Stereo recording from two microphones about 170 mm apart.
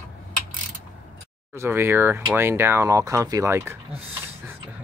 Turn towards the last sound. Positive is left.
turn(degrees=-15)  # may be behind; listen again after turning